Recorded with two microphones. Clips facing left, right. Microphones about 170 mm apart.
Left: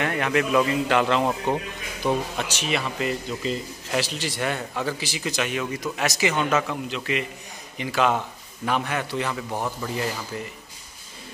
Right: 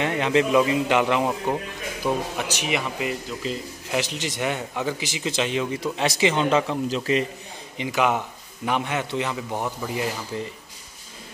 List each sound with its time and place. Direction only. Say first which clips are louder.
0.0 s a man's voice: right 2 dB; 20° right (ahead or behind)
4.0 s a man's voice: even; 20° right (ahead or behind)
7.7 s a man's voice: even; 20° right (ahead or behind)
10.3 s a man's voice: right 3 dB; 25° right (ahead or behind)